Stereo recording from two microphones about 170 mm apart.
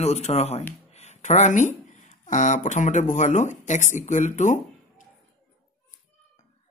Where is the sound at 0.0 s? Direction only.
40° left (ahead or behind).